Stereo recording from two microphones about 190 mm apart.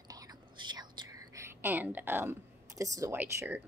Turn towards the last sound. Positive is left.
turn(degrees=-10)  # may be behind; listen again after turning